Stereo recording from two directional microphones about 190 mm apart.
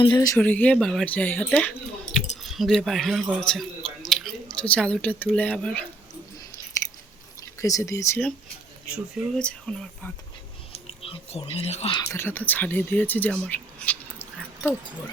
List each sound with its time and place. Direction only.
0.1 s speech: 15° left (ahead or behind)
7.6 s speech: 15° left (ahead or behind)
9.4 s speech: 5° left (ahead or behind)
11.0 s speech: 30° left (ahead or behind)
11.9 s speech: 15° left (ahead or behind)